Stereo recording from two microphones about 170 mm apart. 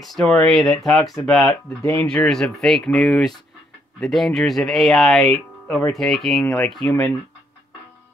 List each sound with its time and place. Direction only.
0.0 s speech: centre (ahead or behind)
1.8 s speech: 15° left (ahead or behind)
2.0 s speech: 5° left (ahead or behind)
6.4 s speech: 15° left (ahead or behind)